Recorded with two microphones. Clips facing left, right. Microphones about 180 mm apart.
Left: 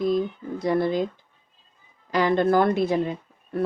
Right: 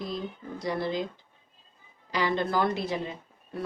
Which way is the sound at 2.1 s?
50° left (ahead or behind).